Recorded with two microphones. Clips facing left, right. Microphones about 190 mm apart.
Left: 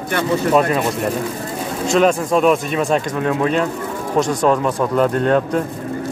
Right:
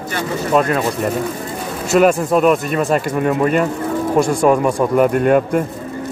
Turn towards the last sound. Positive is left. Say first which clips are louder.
# right 2 dB
turn(degrees=-10)  # may be behind; listen again after turning